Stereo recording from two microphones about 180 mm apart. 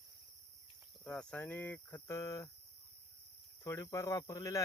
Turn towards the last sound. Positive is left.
turn(degrees=20)  # may be behind; listen again after turning